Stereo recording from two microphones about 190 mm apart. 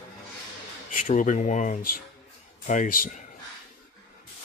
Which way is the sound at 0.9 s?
40° left (ahead or behind).